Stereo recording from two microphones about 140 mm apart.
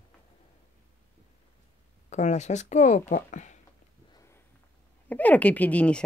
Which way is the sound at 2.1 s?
55° left (ahead or behind).